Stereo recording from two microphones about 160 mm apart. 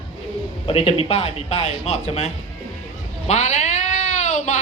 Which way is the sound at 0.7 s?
35° left (ahead or behind).